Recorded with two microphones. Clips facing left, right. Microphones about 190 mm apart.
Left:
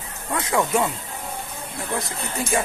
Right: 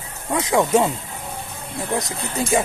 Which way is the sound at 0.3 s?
20° right (ahead or behind).